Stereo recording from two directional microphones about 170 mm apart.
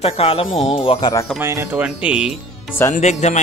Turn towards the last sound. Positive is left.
turn(degrees=45)  # may be behind; listen again after turning